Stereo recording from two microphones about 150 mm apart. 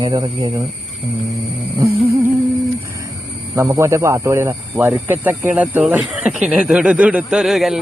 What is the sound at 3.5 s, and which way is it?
Speech, 20° right (ahead or behind).